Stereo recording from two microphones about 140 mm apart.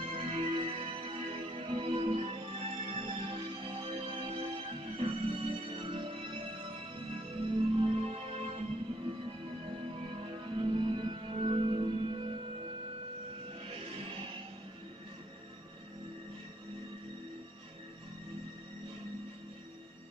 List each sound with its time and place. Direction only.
0.0 s music: 45° right (ahead or behind)
7.4 s music: 40° right (ahead or behind)
10.1 s music: 35° right (ahead or behind)